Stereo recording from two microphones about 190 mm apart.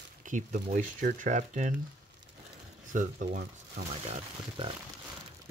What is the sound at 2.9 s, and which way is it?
Speech, 40° right (ahead or behind).